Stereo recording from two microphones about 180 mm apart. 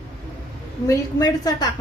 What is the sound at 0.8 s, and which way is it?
Speech, 20° left (ahead or behind).